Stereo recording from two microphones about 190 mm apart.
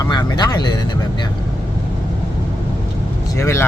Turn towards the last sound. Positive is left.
turn(degrees=15)  # may be behind; listen again after turning